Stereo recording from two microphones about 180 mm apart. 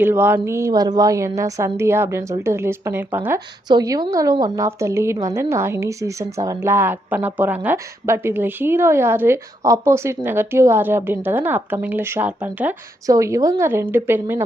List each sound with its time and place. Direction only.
0.0 s a woman's voice: 10° right (ahead or behind)